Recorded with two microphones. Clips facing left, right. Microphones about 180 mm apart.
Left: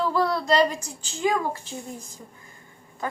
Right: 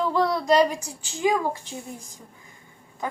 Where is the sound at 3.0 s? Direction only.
15° right (ahead or behind).